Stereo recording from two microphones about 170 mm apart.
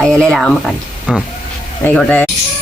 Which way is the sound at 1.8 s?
10° left (ahead or behind).